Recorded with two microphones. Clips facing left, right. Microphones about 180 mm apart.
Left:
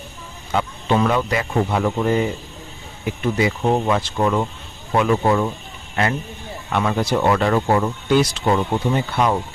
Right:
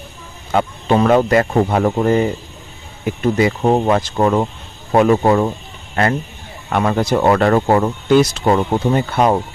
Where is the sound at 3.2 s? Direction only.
45° right (ahead or behind).